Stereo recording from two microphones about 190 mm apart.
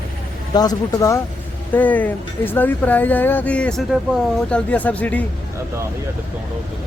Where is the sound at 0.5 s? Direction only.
20° left (ahead or behind).